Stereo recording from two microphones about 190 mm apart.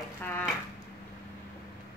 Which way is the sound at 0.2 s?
10° left (ahead or behind).